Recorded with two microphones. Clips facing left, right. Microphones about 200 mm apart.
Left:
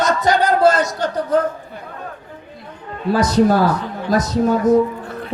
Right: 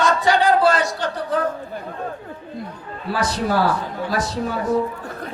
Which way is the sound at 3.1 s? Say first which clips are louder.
Left 7 dB; 45° left (ahead or behind).